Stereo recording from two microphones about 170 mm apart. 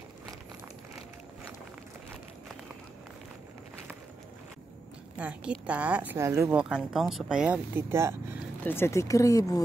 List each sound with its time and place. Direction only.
5.1 s a woman's voice: 5° right (ahead or behind)
6.5 s speech: 5° right (ahead or behind)
8.6 s speech: 15° left (ahead or behind)